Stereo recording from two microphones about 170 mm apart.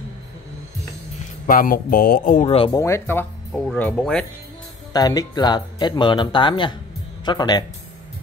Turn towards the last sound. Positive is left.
turn(degrees=25)  # may be behind; listen again after turning